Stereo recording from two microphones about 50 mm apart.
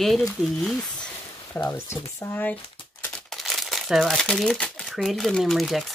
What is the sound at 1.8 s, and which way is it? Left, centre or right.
Speech, left.